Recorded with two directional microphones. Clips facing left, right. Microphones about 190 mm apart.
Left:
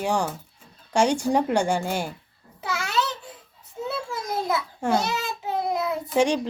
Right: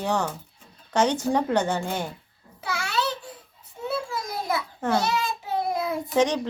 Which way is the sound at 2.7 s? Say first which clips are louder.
Left 2 dB; 20° left (ahead or behind).